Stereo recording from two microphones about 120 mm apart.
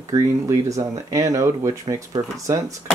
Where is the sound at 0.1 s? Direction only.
25° right (ahead or behind).